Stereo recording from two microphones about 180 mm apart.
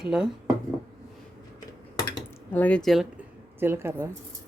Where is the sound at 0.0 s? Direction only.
5° right (ahead or behind).